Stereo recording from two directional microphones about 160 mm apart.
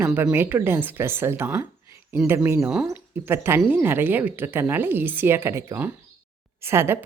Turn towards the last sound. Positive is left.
turn(degrees=-15)  # may be behind; listen again after turning